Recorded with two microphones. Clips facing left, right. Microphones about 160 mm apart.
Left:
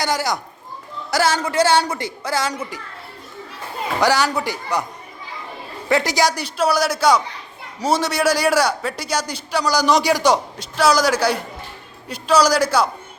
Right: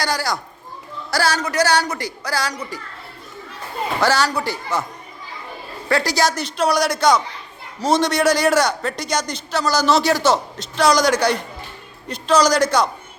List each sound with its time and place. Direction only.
0.0 s a man's voice: 20° left (ahead or behind)
4.0 s a man's voice: 15° left (ahead or behind)
5.9 s a man's voice: 20° left (ahead or behind)